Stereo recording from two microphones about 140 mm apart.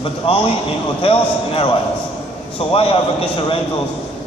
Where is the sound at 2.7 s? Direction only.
40° left (ahead or behind).